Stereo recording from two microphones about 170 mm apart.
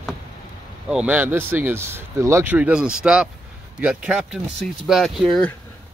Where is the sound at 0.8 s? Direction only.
5° right (ahead or behind).